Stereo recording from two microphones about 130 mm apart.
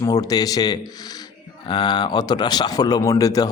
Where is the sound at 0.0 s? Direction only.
25° left (ahead or behind).